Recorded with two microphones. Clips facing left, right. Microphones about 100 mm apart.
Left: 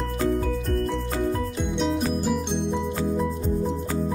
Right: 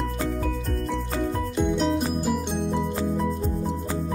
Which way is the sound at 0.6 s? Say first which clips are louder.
Left 3 dB; centre (ahead or behind).